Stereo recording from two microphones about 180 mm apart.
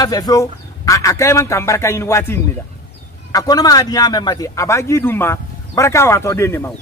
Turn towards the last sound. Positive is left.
turn(degrees=15)  # may be behind; listen again after turning